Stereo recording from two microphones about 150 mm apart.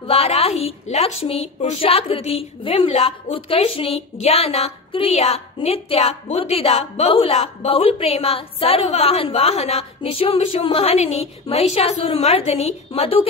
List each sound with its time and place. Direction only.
0.0 s a woman's voice: 40° left (ahead or behind)